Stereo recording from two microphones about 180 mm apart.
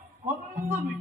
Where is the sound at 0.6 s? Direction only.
40° right (ahead or behind).